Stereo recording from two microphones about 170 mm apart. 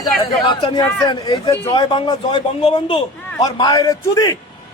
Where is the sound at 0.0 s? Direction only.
25° left (ahead or behind).